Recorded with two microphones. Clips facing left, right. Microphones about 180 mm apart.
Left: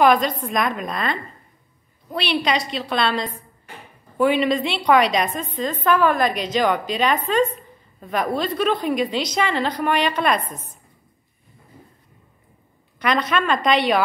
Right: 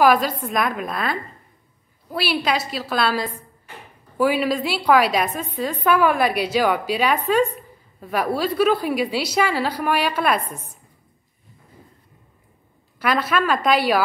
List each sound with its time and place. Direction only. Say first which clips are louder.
0.0 s a woman's voice: even; 5° right (ahead or behind)
13.0 s a woman's voice: even; 5° right (ahead or behind)